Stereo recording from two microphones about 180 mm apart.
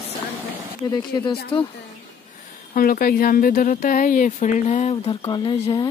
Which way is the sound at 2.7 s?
55° left (ahead or behind).